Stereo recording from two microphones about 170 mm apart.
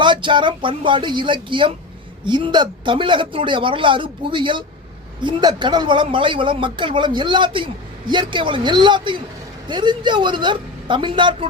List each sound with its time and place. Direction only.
0.0 s speech: 30° right (ahead or behind)